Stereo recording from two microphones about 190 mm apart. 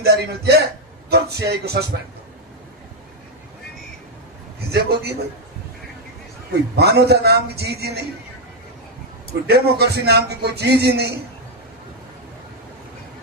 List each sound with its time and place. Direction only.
0.0 s a man's voice: 60° right (ahead or behind)
4.7 s a man's voice: 55° right (ahead or behind)
6.7 s a man's voice: 60° right (ahead or behind)
9.5 s a man's voice: 55° right (ahead or behind)